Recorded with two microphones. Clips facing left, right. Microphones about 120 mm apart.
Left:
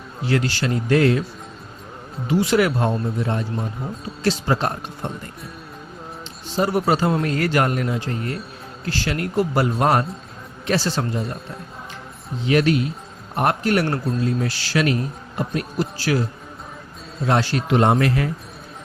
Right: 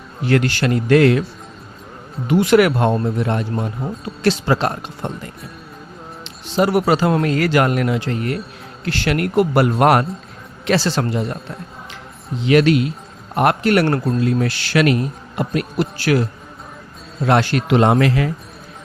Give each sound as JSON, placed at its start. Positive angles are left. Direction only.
{"t": 0.3, "sound": "a man's voice", "side_deg": -60}
{"t": 2.2, "sound": "a man's voice", "side_deg": -60}
{"t": 6.2, "sound": "a man's voice", "side_deg": -80}
{"t": 8.8, "sound": "a man's voice", "side_deg": -70}
{"t": 10.7, "sound": "a man's voice", "side_deg": -90}
{"t": 12.4, "sound": "a man's voice", "side_deg": -90}
{"t": 14.2, "sound": "a man's voice", "side_deg": -65}
{"t": 17.2, "sound": "a man's voice", "side_deg": -65}